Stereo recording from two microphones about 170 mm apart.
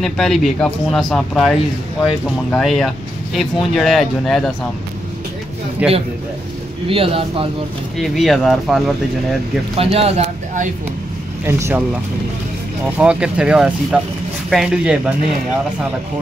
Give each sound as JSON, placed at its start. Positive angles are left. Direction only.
{"t": 0.0, "sound": "speech", "side_deg": 0}
{"t": 5.8, "sound": "speech", "side_deg": -5}
{"t": 6.9, "sound": "speech", "side_deg": -35}
{"t": 8.0, "sound": "speech", "side_deg": 0}
{"t": 9.8, "sound": "speech", "side_deg": -35}
{"t": 11.4, "sound": "speech", "side_deg": -15}